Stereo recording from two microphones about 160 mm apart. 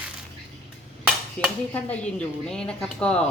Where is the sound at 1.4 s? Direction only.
10° left (ahead or behind).